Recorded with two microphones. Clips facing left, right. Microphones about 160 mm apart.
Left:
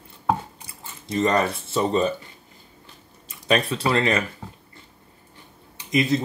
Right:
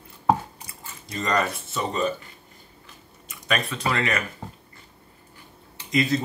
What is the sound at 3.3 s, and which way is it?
Speech, 30° left (ahead or behind).